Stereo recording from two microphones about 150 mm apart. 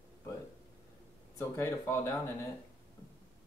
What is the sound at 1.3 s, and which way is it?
Speech, 15° left (ahead or behind).